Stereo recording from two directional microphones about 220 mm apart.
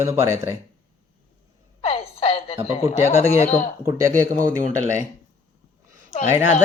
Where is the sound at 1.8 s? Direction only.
25° left (ahead or behind).